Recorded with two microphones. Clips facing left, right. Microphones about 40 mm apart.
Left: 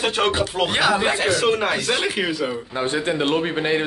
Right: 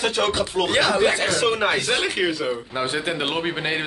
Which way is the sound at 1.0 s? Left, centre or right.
Centre.